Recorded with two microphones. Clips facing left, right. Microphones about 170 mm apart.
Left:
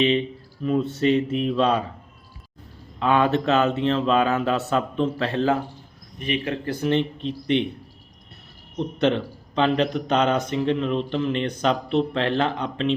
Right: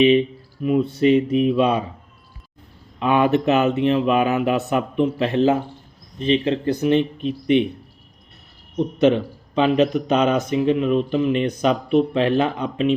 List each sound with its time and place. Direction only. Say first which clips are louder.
0.0 s speech: right 6 dB; 15° right (ahead or behind)
3.0 s speech: right 3 dB; 15° right (ahead or behind)
9.0 s speech: right 5 dB; 10° right (ahead or behind)